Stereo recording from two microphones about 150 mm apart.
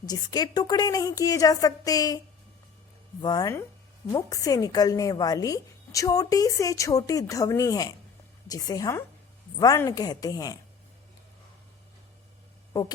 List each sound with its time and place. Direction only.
0.1 s a woman's voice: 25° left (ahead or behind)